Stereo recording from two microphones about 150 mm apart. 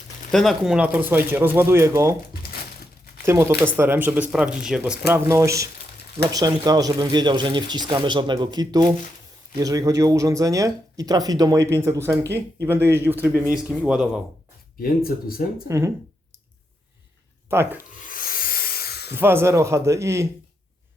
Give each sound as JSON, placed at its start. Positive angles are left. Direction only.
{"t": 0.3, "sound": "speech", "side_deg": 0}
{"t": 3.2, "sound": "speech", "side_deg": -15}
{"t": 5.0, "sound": "speech", "side_deg": -20}
{"t": 14.8, "sound": "speech", "side_deg": 80}
{"t": 17.5, "sound": "speech", "side_deg": -15}
{"t": 18.0, "sound": "owl", "side_deg": 65}
{"t": 19.1, "sound": "speech", "side_deg": -15}